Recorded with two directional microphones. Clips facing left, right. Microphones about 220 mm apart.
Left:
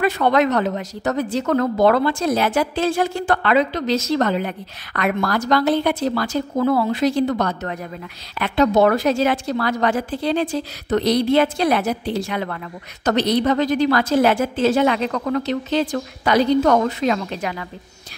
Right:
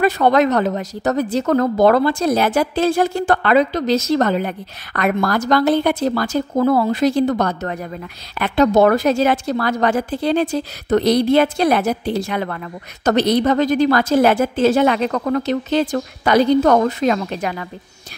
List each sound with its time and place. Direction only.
0.0 s a woman's voice: 40° right (ahead or behind)